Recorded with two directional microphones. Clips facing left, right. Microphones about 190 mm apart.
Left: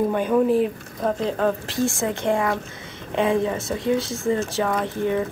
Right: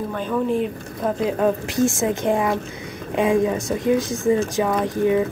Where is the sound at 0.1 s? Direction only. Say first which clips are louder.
Left 4 dB; 15° left (ahead or behind).